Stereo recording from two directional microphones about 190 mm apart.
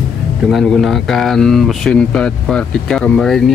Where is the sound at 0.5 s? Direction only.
Centre (ahead or behind).